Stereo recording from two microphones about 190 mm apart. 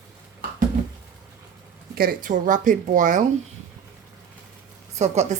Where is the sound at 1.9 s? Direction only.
50° right (ahead or behind).